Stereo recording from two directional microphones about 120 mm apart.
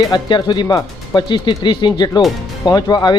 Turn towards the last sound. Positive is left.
turn(degrees=35)  # may be behind; listen again after turning